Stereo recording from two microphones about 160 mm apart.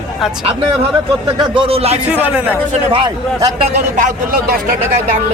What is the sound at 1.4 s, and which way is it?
Speech, 35° right (ahead or behind).